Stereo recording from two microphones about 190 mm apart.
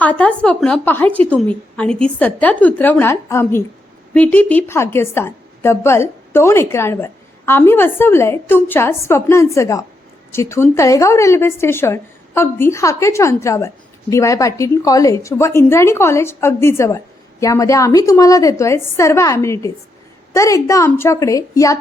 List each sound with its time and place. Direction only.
0.0 s a woman's voice: 10° left (ahead or behind)